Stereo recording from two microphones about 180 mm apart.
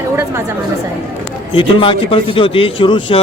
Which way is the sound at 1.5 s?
30° left (ahead or behind).